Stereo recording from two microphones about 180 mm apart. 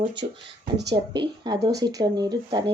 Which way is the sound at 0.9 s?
25° right (ahead or behind).